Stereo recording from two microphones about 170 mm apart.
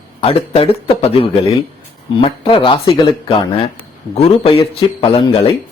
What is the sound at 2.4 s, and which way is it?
Speech, 30° left (ahead or behind).